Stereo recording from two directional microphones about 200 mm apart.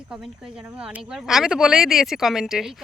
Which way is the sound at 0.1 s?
5° right (ahead or behind).